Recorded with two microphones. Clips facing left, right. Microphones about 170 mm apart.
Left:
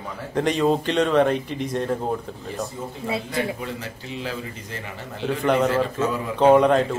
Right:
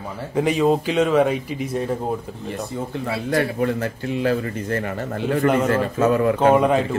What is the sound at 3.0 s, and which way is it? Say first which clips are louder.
A man's voice: right 4 dB; 65° right (ahead or behind).